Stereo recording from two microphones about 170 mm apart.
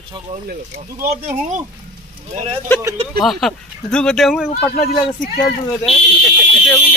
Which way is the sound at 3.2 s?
Centre (ahead or behind).